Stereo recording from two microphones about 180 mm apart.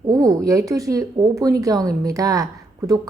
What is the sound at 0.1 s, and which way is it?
A woman's voice, 20° right (ahead or behind).